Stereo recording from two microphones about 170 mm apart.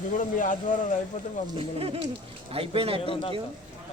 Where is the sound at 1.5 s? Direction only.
30° right (ahead or behind).